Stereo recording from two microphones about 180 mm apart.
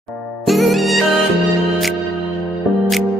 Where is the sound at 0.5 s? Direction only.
Centre (ahead or behind).